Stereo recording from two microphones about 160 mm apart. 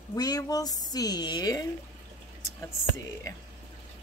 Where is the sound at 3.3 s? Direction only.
20° left (ahead or behind).